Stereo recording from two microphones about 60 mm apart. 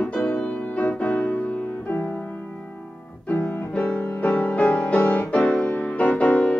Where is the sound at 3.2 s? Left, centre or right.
Left.